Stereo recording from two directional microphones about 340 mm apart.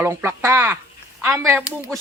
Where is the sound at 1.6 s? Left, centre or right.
Centre.